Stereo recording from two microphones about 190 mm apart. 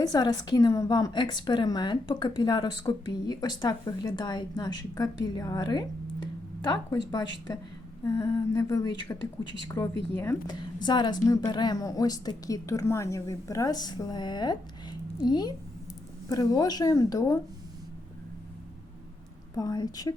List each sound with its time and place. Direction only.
0.0 s speech: 20° left (ahead or behind)
7.1 s speech: 20° left (ahead or behind)
8.0 s a sound: 15° left (ahead or behind)
9.6 s speech: 20° left (ahead or behind)
19.5 s speech: 20° left (ahead or behind)